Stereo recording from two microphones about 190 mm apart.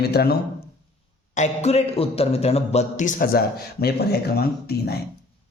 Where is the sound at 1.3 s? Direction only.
35° left (ahead or behind); by 5.0 s 55° left (ahead or behind).